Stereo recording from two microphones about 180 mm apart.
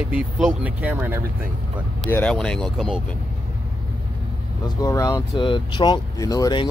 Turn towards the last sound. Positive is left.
turn(degrees=20)  # may be behind; listen again after turning